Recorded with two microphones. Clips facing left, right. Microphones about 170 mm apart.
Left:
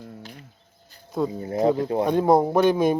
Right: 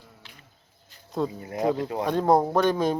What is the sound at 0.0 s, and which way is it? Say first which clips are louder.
Chicken: left 12 dB; 50° left (ahead or behind).